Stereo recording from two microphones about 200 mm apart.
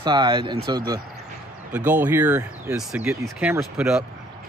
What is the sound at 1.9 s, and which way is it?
Speech, 10° right (ahead or behind).